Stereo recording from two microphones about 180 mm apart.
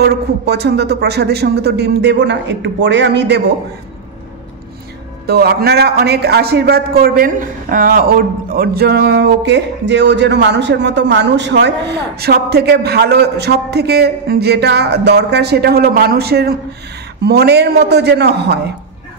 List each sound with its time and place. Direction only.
0.0 s a man's voice: 65° right (ahead or behind)
5.2 s a man's voice: 60° right (ahead or behind)